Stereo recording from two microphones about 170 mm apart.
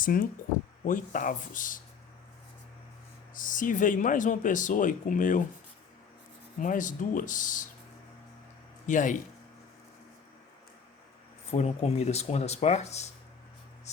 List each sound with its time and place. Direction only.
0.0 s speech: 55° left (ahead or behind)
3.3 s speech: 50° left (ahead or behind)
6.6 s speech: 50° left (ahead or behind)
8.9 s speech: 50° left (ahead or behind)
11.5 s speech: 40° left (ahead or behind)